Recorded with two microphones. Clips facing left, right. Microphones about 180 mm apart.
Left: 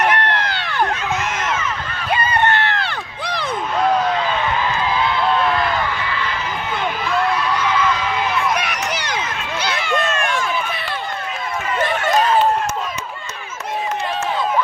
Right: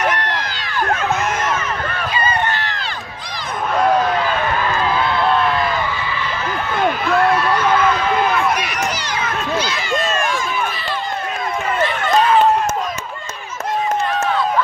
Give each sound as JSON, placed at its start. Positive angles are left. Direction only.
{"t": 0.1, "sound": "run", "side_deg": 60}
{"t": 2.0, "sound": "run", "side_deg": 60}
{"t": 9.6, "sound": "a sound", "side_deg": 60}